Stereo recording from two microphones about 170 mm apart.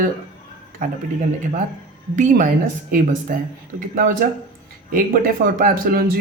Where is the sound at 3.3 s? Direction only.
60° right (ahead or behind).